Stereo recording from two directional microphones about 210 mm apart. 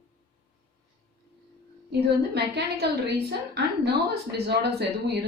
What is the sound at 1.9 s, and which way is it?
A woman's voice, 50° right (ahead or behind).